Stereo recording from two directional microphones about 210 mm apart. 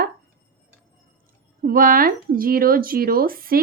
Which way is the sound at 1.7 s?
45° right (ahead or behind).